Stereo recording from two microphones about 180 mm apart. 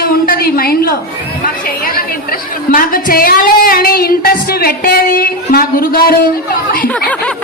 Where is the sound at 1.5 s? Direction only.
55° left (ahead or behind).